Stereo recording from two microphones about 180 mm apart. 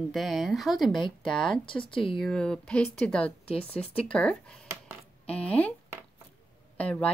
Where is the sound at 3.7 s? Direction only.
30° left (ahead or behind).